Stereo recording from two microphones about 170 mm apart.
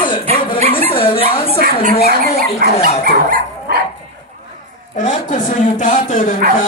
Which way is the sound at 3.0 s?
60° right (ahead or behind).